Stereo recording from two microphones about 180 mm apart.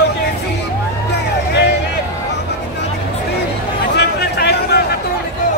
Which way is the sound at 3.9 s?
65° left (ahead or behind).